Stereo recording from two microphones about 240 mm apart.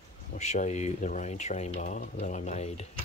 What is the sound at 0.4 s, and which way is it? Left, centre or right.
Speech, left.